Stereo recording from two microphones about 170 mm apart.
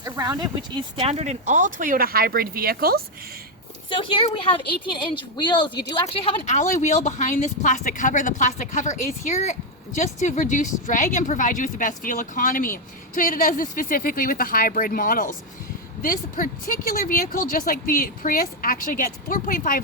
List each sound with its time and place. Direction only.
0.0 s speech: 20° right (ahead or behind); by 3.0 s 60° right (ahead or behind)
3.8 s a woman's voice: 30° left (ahead or behind); by 19.8 s 50° left (ahead or behind)